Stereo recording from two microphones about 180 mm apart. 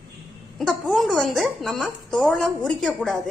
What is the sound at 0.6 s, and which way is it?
A woman's voice, centre (ahead or behind).